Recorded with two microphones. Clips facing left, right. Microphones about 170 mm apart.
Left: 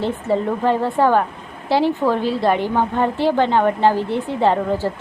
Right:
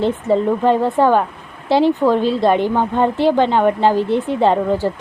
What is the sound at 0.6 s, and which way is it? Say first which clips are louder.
A woman's voice: right 3 dB; 20° right (ahead or behind).